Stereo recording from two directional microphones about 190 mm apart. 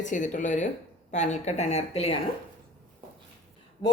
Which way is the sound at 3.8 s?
25° left (ahead or behind).